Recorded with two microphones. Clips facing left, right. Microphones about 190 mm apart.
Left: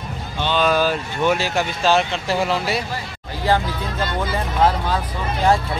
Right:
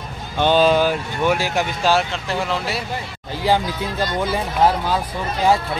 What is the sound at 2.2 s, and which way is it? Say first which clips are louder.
Speech: left 2 dB; 5° left (ahead or behind).